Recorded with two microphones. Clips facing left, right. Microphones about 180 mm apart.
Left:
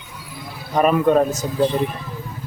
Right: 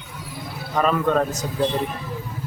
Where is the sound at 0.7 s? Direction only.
15° left (ahead or behind).